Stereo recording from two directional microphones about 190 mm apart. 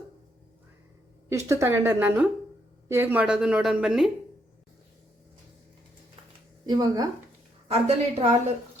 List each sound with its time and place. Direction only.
1.3 s a woman's voice: 15° right (ahead or behind)
6.7 s speech: 20° right (ahead or behind)
7.7 s a woman's voice: 35° right (ahead or behind)